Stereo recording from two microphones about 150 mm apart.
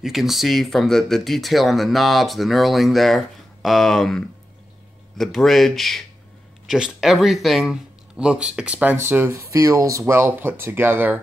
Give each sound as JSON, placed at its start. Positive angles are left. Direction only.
{"t": 0.0, "sound": "speech", "side_deg": 0}